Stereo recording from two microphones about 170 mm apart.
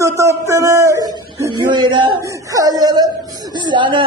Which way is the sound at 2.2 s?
20° right (ahead or behind).